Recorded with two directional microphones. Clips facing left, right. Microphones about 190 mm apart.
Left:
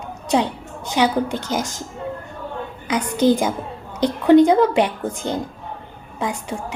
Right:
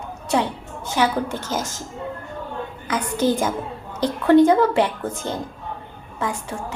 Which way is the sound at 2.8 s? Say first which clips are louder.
Left 4 dB; 15° left (ahead or behind).